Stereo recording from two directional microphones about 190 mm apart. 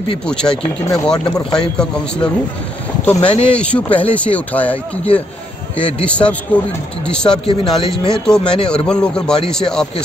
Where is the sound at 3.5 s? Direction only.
5° left (ahead or behind).